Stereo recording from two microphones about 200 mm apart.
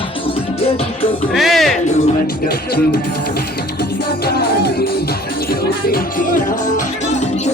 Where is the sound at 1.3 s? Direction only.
Centre (ahead or behind).